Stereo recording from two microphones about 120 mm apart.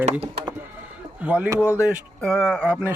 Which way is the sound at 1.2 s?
15° right (ahead or behind).